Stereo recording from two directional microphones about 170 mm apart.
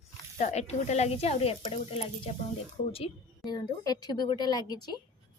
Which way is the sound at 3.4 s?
25° left (ahead or behind).